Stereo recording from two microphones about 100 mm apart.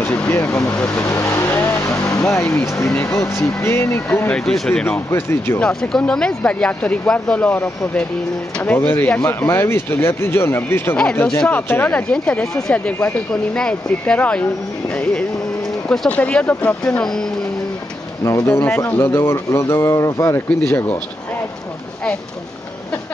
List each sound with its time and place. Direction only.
0.0 s speech: 15° left (ahead or behind)
0.8 s vehicle: 25° left (ahead or behind)
2.6 s speech: 30° left (ahead or behind)
4.3 s speech: 5° left (ahead or behind)
5.1 s speech: 25° left (ahead or behind)
5.6 s speech: 5° left (ahead or behind)
15.9 s speech: 10° left (ahead or behind)
18.2 s speech: 30° left (ahead or behind)